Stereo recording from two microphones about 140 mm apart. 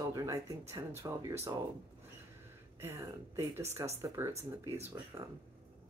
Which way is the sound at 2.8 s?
25° right (ahead or behind).